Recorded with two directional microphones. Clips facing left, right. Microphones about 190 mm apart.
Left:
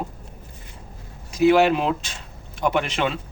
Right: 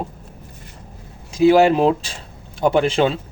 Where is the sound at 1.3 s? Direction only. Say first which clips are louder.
Right 4 dB; 30° right (ahead or behind).